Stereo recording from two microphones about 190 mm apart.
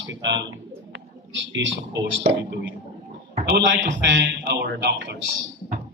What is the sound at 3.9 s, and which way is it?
Speech, 70° right (ahead or behind).